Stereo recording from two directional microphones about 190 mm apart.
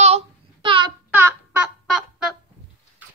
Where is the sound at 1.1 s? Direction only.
10° right (ahead or behind).